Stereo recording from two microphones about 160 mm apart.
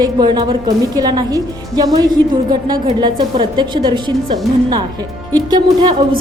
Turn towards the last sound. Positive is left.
turn(degrees=-30)  # may be behind; listen again after turning